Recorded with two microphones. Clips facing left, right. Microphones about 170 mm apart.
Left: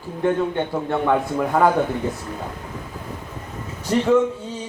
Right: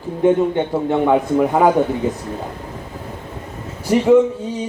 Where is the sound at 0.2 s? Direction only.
15° right (ahead or behind).